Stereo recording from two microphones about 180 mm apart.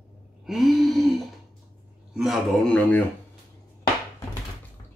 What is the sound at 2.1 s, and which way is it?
Speech, centre (ahead or behind).